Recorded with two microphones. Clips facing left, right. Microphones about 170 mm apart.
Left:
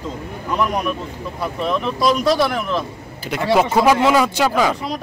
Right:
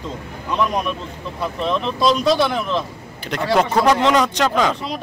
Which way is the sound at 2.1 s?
5° left (ahead or behind).